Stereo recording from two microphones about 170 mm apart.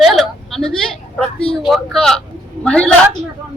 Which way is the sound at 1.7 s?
Centre (ahead or behind).